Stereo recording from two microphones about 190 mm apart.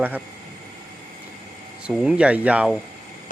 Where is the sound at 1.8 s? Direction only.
5° right (ahead or behind).